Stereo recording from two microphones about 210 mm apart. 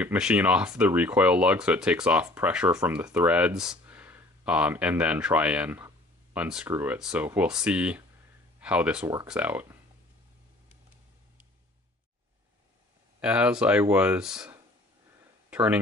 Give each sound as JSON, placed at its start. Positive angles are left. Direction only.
{"t": 0.0, "sound": "speech", "side_deg": -5}
{"t": 13.2, "sound": "speech", "side_deg": -5}